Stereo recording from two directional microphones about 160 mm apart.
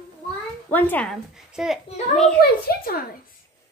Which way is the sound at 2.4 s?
70° left (ahead or behind).